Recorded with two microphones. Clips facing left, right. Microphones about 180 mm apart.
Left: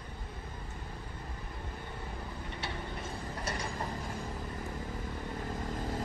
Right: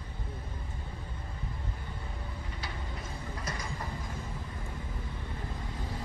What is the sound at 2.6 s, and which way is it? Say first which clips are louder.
Mechanisms: left 3 dB; 25° left (ahead or behind).